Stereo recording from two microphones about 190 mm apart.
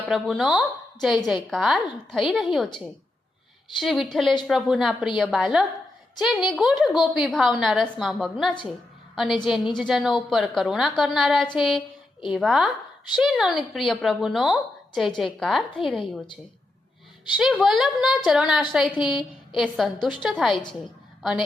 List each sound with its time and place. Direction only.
0.1 s a woman's voice: centre (ahead or behind)
3.8 s a woman's voice: centre (ahead or behind)
16.0 s a woman's voice: 25° left (ahead or behind)
17.3 s a woman's voice: 5° right (ahead or behind)